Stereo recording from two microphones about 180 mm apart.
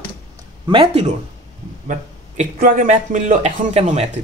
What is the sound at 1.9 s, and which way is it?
Speech, 45° right (ahead or behind).